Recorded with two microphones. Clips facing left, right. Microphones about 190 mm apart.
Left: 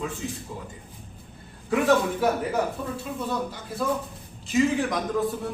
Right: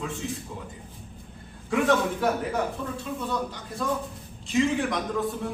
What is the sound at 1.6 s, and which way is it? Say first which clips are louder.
Speech: left 2 dB; 5° left (ahead or behind).